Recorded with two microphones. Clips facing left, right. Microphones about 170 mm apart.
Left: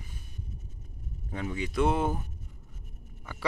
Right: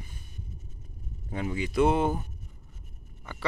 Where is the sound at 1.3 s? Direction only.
5° right (ahead or behind).